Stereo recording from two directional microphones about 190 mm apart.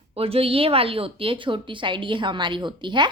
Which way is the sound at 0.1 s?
30° right (ahead or behind).